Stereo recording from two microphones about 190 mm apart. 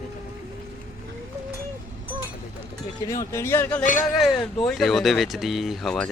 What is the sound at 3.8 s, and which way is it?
Speech, 40° left (ahead or behind).